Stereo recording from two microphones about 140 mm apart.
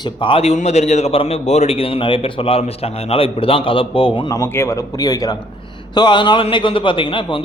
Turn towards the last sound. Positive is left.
turn(degrees=40)  # may be behind; listen again after turning